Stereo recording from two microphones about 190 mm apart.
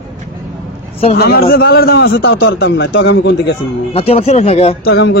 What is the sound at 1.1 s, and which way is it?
A man's voice, 55° left (ahead or behind).